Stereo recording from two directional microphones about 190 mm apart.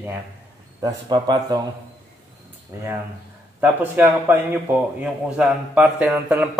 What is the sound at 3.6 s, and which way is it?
Speech, 10° right (ahead or behind).